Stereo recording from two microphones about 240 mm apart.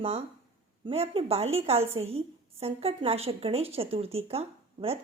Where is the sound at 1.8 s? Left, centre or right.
Right.